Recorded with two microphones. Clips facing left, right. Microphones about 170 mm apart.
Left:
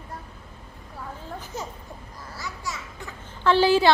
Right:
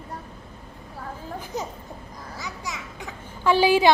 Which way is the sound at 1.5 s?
15° right (ahead or behind).